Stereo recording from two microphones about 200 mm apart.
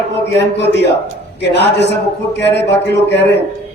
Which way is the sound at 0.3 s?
60° left (ahead or behind).